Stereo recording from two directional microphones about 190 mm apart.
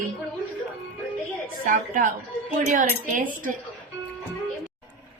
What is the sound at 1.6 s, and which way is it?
A woman's voice, 40° right (ahead or behind).